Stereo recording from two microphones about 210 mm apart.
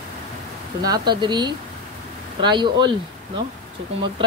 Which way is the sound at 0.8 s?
20° right (ahead or behind).